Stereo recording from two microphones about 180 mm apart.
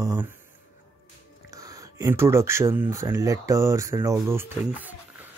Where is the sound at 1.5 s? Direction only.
20° right (ahead or behind).